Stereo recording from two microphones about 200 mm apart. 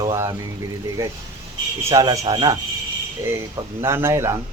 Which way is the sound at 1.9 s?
15° right (ahead or behind).